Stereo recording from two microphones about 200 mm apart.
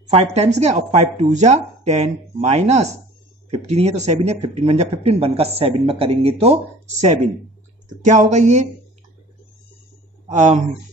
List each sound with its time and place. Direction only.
0.1 s speech: 30° right (ahead or behind)
10.3 s speech: 35° right (ahead or behind)